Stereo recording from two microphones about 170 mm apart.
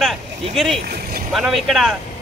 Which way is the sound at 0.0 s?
Centre (ahead or behind).